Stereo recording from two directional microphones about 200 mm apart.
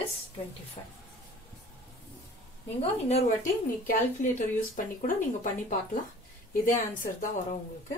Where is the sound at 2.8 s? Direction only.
30° left (ahead or behind).